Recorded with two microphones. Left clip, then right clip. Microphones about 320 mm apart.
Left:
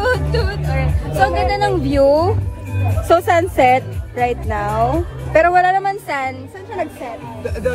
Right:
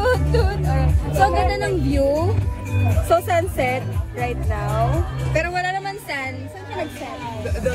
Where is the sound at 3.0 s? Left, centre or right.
Left.